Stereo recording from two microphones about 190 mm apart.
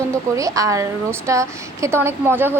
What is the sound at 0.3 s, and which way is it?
A woman's voice, 15° right (ahead or behind).